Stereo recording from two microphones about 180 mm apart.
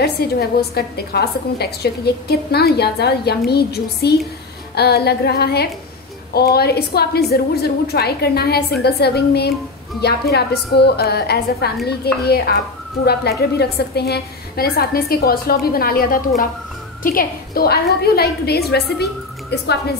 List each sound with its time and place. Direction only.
0.0 s a woman's voice: 60° left (ahead or behind)